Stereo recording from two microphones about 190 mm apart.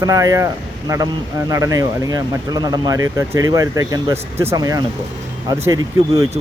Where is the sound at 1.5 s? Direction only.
15° right (ahead or behind).